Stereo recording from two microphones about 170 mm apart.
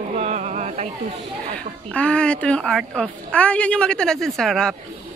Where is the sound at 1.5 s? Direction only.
5° left (ahead or behind).